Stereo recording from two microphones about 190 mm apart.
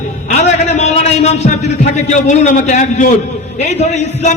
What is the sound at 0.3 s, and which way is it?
A man's voice, 35° left (ahead or behind).